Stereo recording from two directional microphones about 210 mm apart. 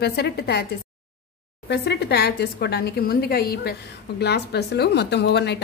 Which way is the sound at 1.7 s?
50° left (ahead or behind).